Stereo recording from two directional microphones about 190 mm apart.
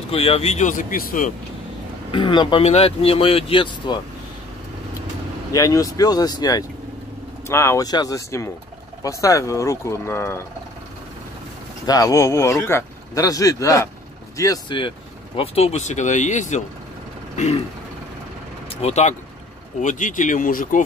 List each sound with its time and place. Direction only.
0.1 s speech: 30° left (ahead or behind)
2.0 s speech: 25° left (ahead or behind)
5.5 s speech: 20° left (ahead or behind)
11.8 s speech: 20° left (ahead or behind)
18.8 s speech: 35° left (ahead or behind)